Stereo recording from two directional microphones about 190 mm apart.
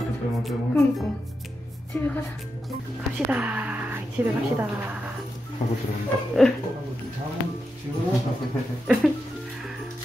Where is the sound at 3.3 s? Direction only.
10° right (ahead or behind).